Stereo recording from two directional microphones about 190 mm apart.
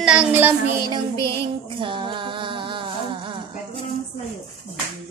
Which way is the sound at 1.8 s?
25° right (ahead or behind).